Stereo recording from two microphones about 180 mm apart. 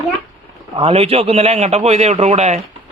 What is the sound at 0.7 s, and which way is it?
A man's voice, 35° right (ahead or behind).